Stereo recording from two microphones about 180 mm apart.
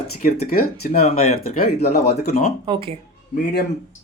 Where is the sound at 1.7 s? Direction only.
65° left (ahead or behind).